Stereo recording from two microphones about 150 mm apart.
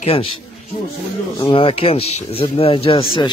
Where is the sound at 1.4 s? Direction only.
35° left (ahead or behind).